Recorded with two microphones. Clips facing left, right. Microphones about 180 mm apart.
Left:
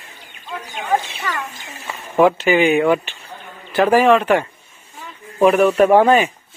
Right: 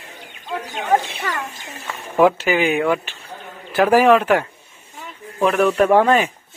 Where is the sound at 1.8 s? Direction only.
10° left (ahead or behind).